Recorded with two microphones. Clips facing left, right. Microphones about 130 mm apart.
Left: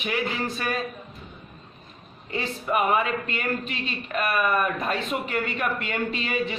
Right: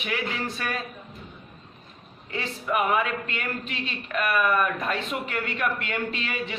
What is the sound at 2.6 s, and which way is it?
A man's voice, 30° left (ahead or behind).